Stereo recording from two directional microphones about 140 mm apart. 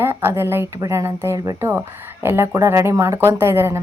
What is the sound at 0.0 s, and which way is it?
Speech, 15° right (ahead or behind).